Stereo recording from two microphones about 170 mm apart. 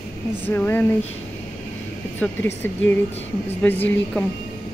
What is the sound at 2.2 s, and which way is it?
Speech, 10° left (ahead or behind).